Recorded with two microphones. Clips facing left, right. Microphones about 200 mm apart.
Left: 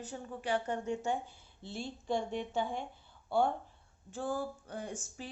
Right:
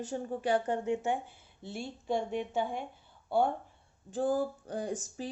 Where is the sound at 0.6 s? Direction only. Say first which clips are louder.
Right 4 dB; 20° right (ahead or behind).